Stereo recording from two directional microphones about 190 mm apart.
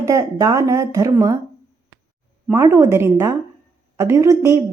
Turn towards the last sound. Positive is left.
turn(degrees=-15)  # may be behind; listen again after turning